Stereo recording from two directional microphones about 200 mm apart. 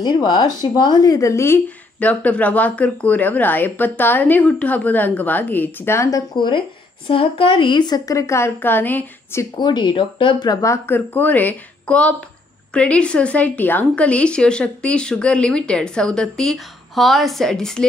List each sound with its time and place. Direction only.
0.0 s a woman's voice: 20° left (ahead or behind); by 17.8 s 5° left (ahead or behind)